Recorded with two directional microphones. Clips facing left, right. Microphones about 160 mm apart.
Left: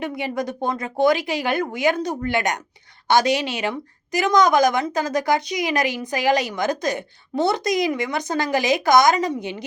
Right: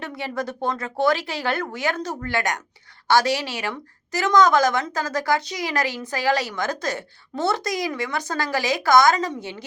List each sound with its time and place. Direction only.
0.0 s a woman's voice: 15° left (ahead or behind)